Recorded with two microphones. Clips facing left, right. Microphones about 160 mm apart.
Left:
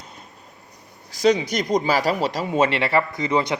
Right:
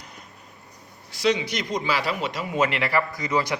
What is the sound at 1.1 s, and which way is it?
Speech, 40° left (ahead or behind).